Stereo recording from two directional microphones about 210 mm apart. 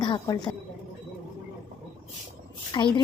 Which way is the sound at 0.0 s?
20° left (ahead or behind).